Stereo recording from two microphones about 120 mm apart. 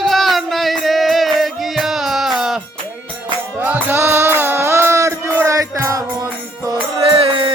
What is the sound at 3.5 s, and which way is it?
Music, 15° right (ahead or behind).